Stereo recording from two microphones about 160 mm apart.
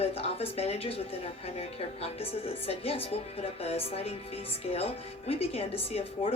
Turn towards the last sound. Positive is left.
turn(degrees=35)  # may be behind; listen again after turning